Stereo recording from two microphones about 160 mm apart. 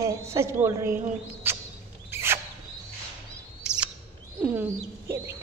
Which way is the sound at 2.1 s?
15° right (ahead or behind).